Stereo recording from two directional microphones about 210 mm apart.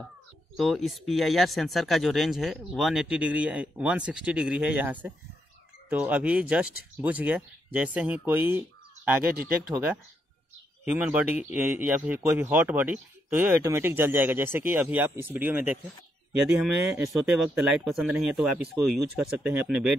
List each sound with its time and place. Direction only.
0.6 s a man's voice: centre (ahead or behind)